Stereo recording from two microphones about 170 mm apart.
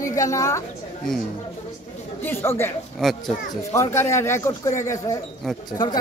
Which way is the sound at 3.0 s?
Centre (ahead or behind).